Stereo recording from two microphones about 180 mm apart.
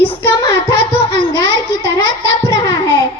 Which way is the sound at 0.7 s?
25° left (ahead or behind).